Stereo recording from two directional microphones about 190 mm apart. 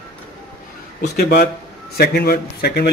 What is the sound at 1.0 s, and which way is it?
A man's voice, 55° left (ahead or behind).